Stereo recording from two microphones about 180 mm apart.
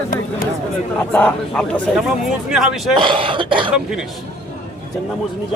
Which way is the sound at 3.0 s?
30° right (ahead or behind).